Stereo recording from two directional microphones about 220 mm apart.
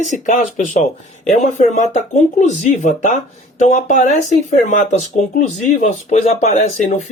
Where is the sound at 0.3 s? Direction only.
35° left (ahead or behind).